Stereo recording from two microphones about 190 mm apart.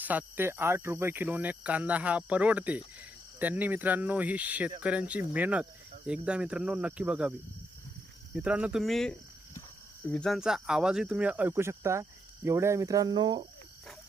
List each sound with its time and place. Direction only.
0.0 s cricket: 10° right (ahead or behind)
6.1 s speech: 5° right (ahead or behind)
8.4 s speech: 5° right (ahead or behind); by 13.4 s 20° right (ahead or behind)